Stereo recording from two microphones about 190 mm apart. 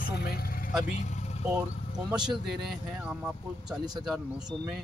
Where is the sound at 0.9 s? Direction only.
40° left (ahead or behind).